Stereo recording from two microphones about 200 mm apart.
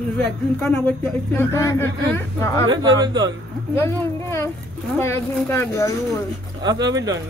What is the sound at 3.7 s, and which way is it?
Speech, 10° left (ahead or behind).